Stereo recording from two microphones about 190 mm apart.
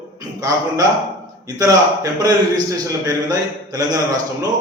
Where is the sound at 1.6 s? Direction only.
20° right (ahead or behind).